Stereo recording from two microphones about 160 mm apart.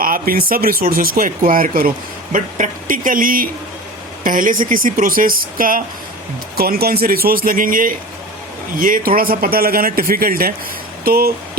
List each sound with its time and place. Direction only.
0.0 s speech: 65° right (ahead or behind)
6.6 s speech: 70° right (ahead or behind)